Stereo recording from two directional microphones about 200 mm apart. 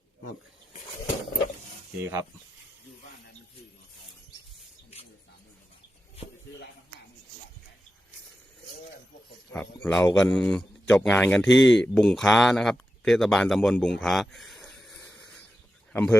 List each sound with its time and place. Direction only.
2.0 s speech: 15° right (ahead or behind)
9.5 s a man's voice: 10° left (ahead or behind)